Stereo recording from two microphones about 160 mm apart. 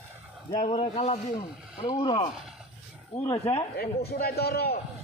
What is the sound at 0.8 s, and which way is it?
Speech, 45° left (ahead or behind).